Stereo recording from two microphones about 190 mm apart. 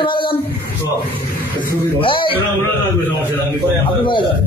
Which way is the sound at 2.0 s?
25° left (ahead or behind).